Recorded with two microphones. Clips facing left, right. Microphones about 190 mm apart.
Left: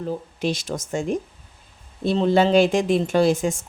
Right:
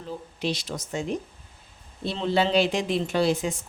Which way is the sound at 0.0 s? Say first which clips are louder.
Left 5 dB; 45° left (ahead or behind).